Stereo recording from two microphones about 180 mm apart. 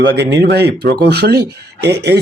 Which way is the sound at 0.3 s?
65° right (ahead or behind).